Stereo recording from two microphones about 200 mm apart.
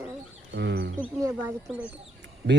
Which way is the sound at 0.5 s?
60° right (ahead or behind).